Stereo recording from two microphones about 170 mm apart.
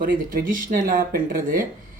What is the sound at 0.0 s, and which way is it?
Speech, 55° right (ahead or behind).